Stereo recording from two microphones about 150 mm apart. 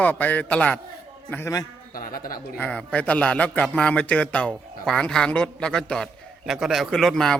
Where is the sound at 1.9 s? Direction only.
75° left (ahead or behind).